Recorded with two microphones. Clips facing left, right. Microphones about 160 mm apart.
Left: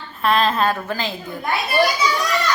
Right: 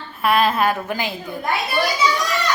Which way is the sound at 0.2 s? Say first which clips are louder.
Right 1 dB; 10° right (ahead or behind).